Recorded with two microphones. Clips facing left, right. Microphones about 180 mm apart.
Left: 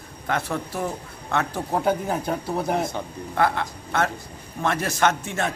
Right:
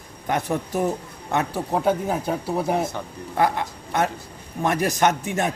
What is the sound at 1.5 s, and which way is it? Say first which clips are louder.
A man's voice: right 1 dB; 5° right (ahead or behind).